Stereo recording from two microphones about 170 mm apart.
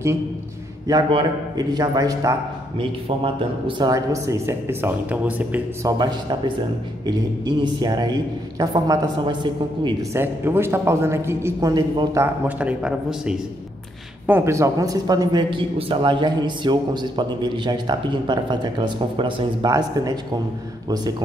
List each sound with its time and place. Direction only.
0.8 s a man's voice: 20° right (ahead or behind)
3.6 s a woman's voice: 25° right (ahead or behind); by 5.6 s 10° right (ahead or behind)
5.9 s a man's voice: 25° right (ahead or behind)
10.1 s a woman's voice: 15° right (ahead or behind)